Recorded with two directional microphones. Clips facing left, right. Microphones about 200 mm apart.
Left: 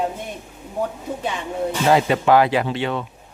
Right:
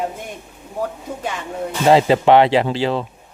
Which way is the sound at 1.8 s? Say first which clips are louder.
Right 5 dB; 25° right (ahead or behind).